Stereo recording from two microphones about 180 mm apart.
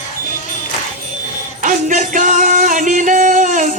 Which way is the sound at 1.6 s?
45° right (ahead or behind).